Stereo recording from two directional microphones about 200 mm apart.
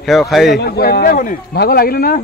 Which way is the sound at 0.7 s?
50° left (ahead or behind).